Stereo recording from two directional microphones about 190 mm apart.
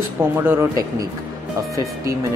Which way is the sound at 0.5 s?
15° right (ahead or behind).